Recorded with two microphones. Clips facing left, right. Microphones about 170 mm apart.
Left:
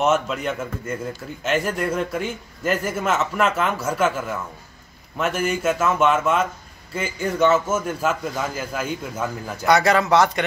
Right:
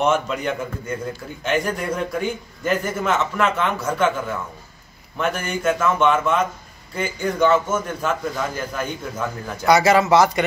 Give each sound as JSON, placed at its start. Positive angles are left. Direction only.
{"t": 0.0, "sound": "a man's voice", "side_deg": 0}
{"t": 5.1, "sound": "a man's voice", "side_deg": 5}